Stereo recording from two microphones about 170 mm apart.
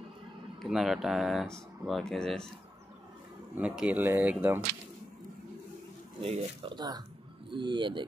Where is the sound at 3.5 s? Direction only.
5° right (ahead or behind).